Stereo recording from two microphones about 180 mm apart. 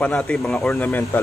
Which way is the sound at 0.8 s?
10° left (ahead or behind).